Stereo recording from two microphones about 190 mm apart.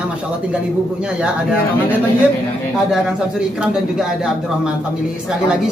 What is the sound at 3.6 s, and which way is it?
Speech, 5° right (ahead or behind).